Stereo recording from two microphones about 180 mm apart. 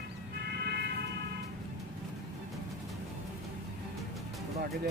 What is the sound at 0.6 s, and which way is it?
Vehicle, 65° right (ahead or behind).